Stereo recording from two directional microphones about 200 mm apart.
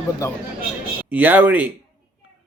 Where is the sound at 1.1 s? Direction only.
10° right (ahead or behind).